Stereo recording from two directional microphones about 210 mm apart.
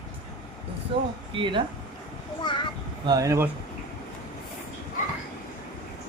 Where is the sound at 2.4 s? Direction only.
20° left (ahead or behind).